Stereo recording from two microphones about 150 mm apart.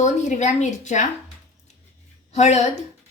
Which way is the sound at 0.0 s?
50° left (ahead or behind).